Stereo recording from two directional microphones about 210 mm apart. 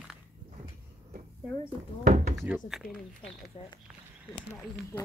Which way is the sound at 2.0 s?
35° right (ahead or behind).